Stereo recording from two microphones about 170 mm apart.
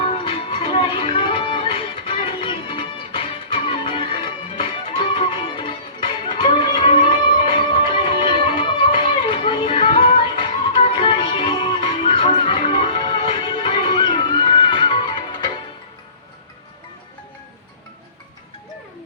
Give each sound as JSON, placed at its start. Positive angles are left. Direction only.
{"t": 0.0, "sound": "music", "side_deg": 30}
{"t": 8.2, "sound": "music", "side_deg": 30}